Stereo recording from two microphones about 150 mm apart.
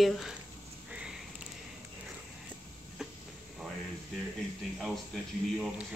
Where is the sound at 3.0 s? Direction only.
5° right (ahead or behind).